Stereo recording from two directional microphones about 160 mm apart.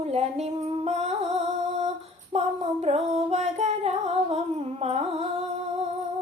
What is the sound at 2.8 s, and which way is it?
Music, 45° right (ahead or behind).